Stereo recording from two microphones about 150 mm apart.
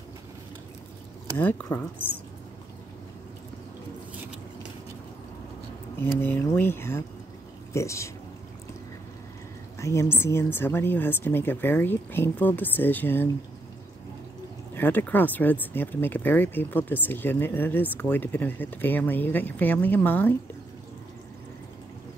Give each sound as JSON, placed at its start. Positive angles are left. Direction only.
{"t": 1.4, "sound": "speech", "side_deg": 10}
{"t": 6.2, "sound": "speech", "side_deg": 10}
{"t": 9.8, "sound": "speech", "side_deg": 20}
{"t": 14.8, "sound": "speech", "side_deg": 10}